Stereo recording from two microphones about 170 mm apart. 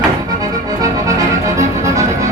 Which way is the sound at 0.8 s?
20° right (ahead or behind).